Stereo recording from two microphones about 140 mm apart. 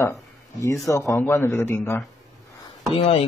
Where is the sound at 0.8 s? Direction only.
20° left (ahead or behind).